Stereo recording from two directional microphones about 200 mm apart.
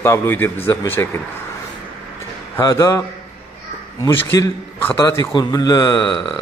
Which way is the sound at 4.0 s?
15° left (ahead or behind).